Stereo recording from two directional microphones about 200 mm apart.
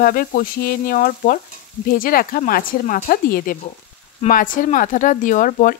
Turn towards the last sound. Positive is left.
turn(degrees=40)  # may be behind; listen again after turning